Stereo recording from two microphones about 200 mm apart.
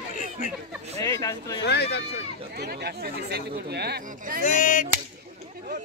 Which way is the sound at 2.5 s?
55° right (ahead or behind).